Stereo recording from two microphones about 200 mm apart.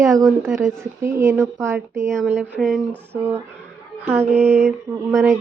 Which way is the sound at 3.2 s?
10° right (ahead or behind).